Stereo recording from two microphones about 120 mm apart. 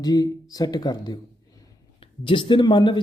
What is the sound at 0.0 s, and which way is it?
Speech, 30° left (ahead or behind).